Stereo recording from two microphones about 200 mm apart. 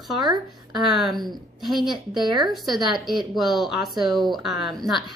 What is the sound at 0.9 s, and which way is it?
Speech, centre (ahead or behind).